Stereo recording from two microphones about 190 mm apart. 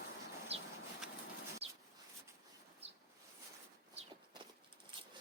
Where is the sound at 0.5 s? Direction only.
30° right (ahead or behind).